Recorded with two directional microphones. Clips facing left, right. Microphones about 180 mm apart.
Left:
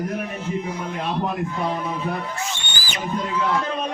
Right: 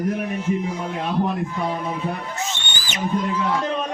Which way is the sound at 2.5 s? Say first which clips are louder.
Even; 20° right (ahead or behind).